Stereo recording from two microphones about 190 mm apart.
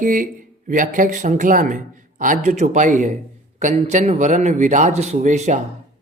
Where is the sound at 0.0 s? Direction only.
45° right (ahead or behind).